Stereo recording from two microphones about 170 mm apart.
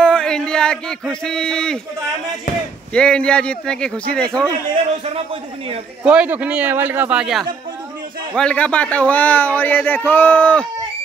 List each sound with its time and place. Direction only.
0.0 s a sound: 5° left (ahead or behind)
2.9 s speech: 5° left (ahead or behind)
5.0 s a man's voice: 35° right (ahead or behind)
6.0 s a man's voice: 10° right (ahead or behind); by 10.7 s 10° left (ahead or behind)